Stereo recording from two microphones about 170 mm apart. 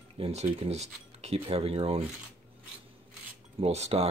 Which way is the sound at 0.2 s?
40° right (ahead or behind).